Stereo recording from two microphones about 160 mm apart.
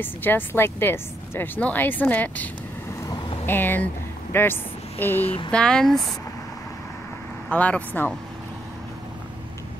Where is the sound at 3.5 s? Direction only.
10° left (ahead or behind).